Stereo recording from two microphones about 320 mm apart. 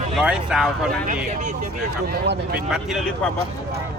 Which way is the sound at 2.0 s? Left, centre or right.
Right.